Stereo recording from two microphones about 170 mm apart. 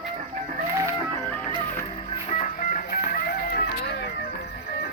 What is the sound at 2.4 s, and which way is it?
Music, 50° left (ahead or behind).